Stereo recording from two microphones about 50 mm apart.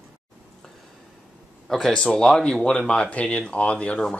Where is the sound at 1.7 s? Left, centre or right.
Centre.